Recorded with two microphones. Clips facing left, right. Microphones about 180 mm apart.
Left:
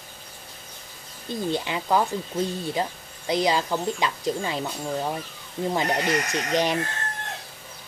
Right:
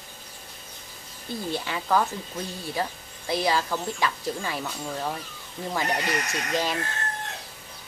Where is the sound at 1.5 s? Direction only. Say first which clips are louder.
Left 1 dB; 20° left (ahead or behind).